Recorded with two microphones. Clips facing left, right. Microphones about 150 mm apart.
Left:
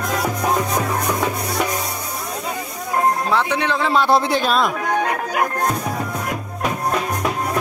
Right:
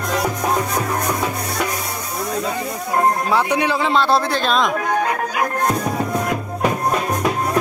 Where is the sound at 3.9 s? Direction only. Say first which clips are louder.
Left 3 dB; 15° left (ahead or behind).